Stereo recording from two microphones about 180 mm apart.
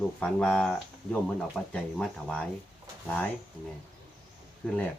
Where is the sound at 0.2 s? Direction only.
5° left (ahead or behind).